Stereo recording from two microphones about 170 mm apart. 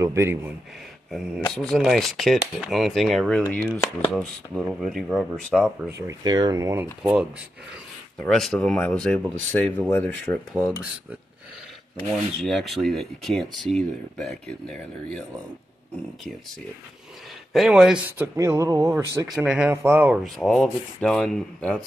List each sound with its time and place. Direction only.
0.0 s speech: 15° right (ahead or behind)
1.1 s speech: 5° right (ahead or behind)
6.0 s speech: 25° right (ahead or behind)
7.0 s speech: 5° right (ahead or behind)
12.1 s speech: centre (ahead or behind)
17.5 s speech: centre (ahead or behind)
18.2 s speech: 15° right (ahead or behind)
19.3 s speech: 5° right (ahead or behind)
20.3 s speech: centre (ahead or behind)